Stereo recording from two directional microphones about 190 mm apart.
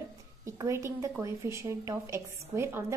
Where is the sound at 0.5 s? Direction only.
15° right (ahead or behind).